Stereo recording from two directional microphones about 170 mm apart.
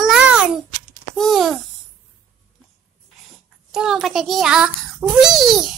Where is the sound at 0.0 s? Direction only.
5° right (ahead or behind).